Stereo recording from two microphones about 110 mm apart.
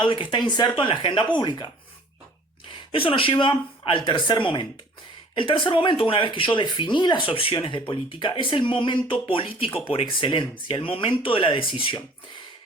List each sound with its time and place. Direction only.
0.0 s speech: 50° left (ahead or behind)
2.6 s a woman's voice: 55° left (ahead or behind)